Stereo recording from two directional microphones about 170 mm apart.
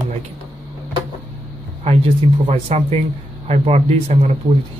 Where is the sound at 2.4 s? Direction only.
40° right (ahead or behind).